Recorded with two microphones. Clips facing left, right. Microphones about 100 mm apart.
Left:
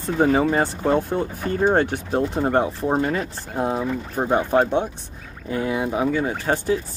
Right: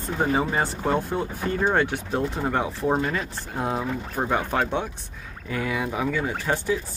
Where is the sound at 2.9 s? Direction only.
35° left (ahead or behind).